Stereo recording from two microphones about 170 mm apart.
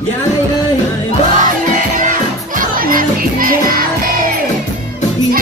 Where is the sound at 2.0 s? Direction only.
50° right (ahead or behind).